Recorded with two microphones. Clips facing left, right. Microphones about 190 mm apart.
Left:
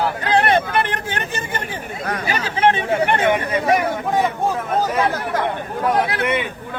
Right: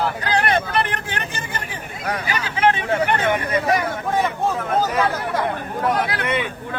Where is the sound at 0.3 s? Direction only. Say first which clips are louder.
Left 5 dB; 25° left (ahead or behind).